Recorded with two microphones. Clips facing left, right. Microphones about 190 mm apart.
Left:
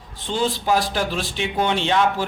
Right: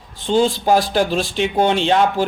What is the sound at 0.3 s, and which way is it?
Speech, 35° right (ahead or behind).